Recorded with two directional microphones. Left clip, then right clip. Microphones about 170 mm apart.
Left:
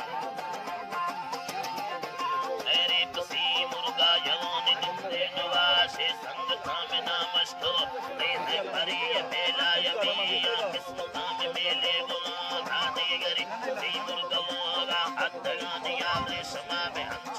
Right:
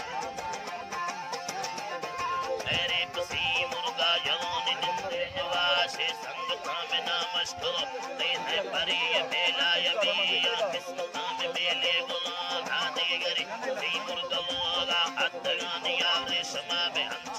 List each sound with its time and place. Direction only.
2.7 s music: 5° right (ahead or behind); by 17.0 s 20° right (ahead or behind)